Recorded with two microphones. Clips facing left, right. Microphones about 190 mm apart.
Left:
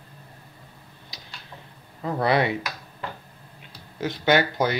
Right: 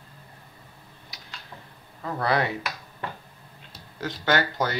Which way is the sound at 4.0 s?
15° left (ahead or behind).